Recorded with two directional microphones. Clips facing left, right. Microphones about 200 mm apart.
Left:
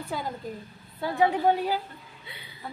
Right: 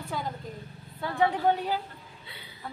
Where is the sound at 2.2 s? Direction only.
15° left (ahead or behind).